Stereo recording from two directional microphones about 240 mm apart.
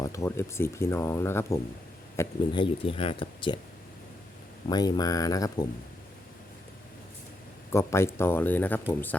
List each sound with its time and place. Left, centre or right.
0.0 s speech: centre
4.7 s speech: centre
7.7 s speech: centre